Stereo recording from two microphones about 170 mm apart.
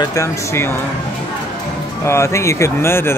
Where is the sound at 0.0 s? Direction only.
20° left (ahead or behind).